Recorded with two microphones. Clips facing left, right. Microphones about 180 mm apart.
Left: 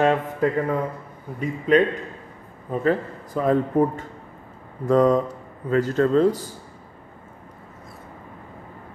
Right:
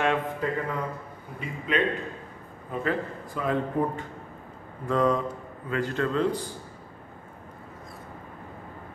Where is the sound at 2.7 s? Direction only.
40° left (ahead or behind).